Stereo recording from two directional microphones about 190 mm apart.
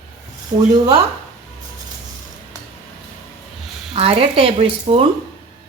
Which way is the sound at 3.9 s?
30° right (ahead or behind).